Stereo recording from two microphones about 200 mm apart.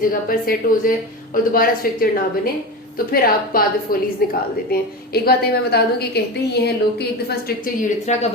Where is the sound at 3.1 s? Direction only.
45° left (ahead or behind).